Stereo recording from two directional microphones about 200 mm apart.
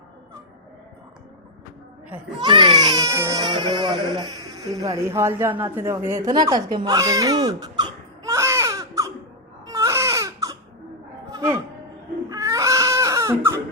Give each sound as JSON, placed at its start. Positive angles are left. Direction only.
{"t": 2.4, "sound": "speech", "side_deg": -25}
{"t": 9.6, "sound": "baby cry", "side_deg": -15}
{"t": 11.3, "sound": "a sound", "side_deg": -15}
{"t": 12.3, "sound": "baby cry", "side_deg": -15}